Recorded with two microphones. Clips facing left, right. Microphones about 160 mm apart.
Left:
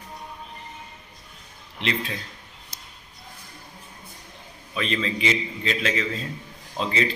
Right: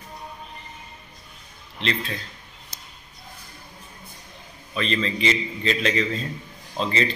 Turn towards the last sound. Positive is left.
turn(degrees=5)  # may be behind; listen again after turning